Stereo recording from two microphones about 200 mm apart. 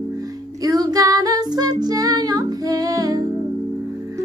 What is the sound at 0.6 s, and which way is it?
Music, 20° right (ahead or behind).